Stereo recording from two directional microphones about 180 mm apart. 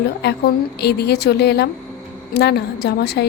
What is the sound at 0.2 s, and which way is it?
A woman's voice, 65° left (ahead or behind).